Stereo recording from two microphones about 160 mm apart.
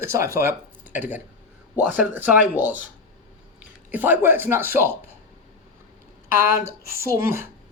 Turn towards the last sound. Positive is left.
turn(degrees=-15)  # may be behind; listen again after turning